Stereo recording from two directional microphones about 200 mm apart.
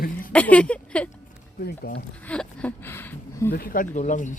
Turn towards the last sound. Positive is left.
turn(degrees=40)  # may be behind; listen again after turning